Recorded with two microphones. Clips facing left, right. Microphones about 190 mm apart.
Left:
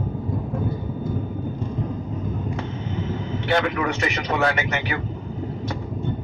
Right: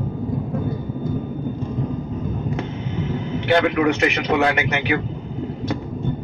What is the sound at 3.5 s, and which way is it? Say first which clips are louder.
Speech: right 6 dB; 60° right (ahead or behind).